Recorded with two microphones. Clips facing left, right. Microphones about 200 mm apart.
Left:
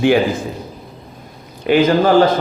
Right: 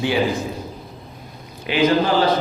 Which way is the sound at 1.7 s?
50° left (ahead or behind).